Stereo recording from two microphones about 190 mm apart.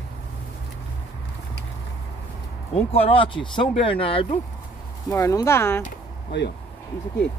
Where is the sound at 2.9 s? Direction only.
30° left (ahead or behind).